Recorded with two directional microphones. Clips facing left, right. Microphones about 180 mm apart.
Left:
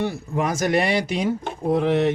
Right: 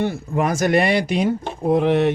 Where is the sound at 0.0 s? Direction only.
55° right (ahead or behind).